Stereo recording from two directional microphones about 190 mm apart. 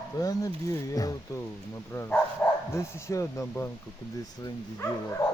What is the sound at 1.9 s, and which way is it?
Speech, 15° left (ahead or behind).